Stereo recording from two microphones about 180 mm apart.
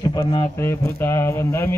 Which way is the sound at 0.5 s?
15° left (ahead or behind).